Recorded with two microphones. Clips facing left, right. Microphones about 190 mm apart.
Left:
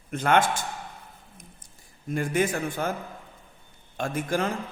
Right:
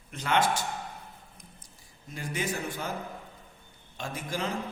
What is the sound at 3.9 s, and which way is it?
Speech, 50° left (ahead or behind).